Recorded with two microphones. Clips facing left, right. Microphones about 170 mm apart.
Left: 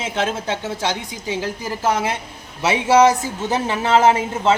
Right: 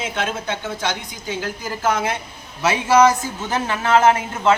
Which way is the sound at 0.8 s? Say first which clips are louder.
Left 2 dB; 30° left (ahead or behind).